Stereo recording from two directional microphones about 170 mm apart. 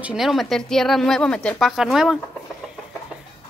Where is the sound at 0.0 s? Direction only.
Centre (ahead or behind).